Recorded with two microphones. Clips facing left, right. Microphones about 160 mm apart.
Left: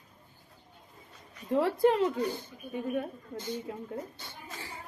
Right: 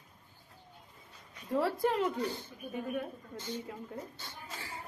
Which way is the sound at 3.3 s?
10° left (ahead or behind).